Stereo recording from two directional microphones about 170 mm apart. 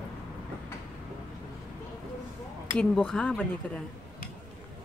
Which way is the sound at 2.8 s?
5° left (ahead or behind).